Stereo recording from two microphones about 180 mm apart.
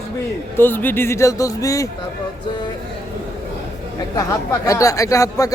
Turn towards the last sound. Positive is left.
turn(degrees=20)  # may be behind; listen again after turning